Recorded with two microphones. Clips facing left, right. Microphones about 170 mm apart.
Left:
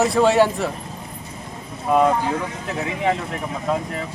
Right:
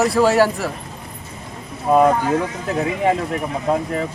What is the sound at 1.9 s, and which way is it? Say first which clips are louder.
Speech: right 3 dB; 30° right (ahead or behind).